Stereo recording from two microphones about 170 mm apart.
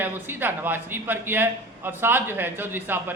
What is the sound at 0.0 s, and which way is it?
A man's voice, 10° right (ahead or behind).